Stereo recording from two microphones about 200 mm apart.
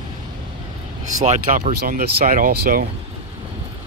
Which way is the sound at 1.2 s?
40° right (ahead or behind).